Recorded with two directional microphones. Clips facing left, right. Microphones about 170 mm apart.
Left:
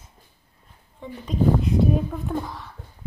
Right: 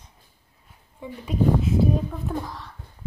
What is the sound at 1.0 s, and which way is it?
Speech, 5° right (ahead or behind).